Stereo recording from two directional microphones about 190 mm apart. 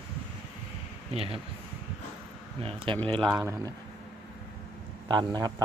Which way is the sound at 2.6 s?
30° right (ahead or behind).